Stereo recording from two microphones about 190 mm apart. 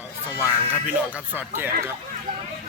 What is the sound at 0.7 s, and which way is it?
A man's voice, 10° right (ahead or behind).